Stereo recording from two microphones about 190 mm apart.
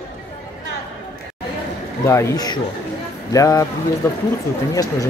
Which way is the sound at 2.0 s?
15° left (ahead or behind).